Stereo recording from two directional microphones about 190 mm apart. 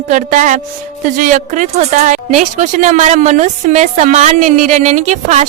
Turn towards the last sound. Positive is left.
turn(degrees=-40)  # may be behind; listen again after turning